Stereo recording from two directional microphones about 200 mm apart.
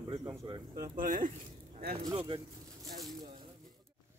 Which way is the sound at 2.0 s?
25° right (ahead or behind).